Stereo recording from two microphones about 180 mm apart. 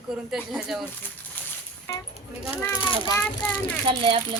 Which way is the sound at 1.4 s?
10° left (ahead or behind).